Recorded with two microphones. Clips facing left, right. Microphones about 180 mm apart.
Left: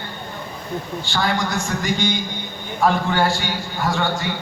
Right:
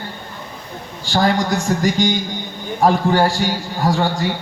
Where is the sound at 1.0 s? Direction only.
40° right (ahead or behind).